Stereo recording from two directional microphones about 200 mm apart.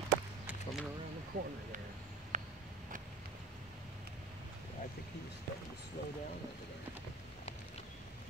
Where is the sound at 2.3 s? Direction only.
35° right (ahead or behind).